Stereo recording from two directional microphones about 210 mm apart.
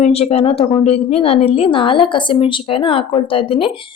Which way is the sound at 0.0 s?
30° left (ahead or behind).